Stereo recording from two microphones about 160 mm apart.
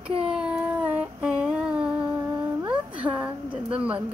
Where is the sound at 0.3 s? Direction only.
5° right (ahead or behind).